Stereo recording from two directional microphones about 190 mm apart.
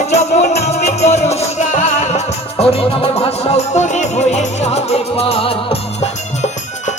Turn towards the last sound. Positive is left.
turn(degrees=35)  # may be behind; listen again after turning